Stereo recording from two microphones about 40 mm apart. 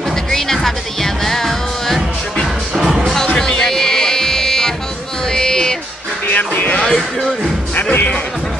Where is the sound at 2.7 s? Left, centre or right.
Centre.